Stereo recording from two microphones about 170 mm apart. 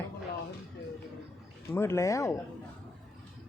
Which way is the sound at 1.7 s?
15° left (ahead or behind).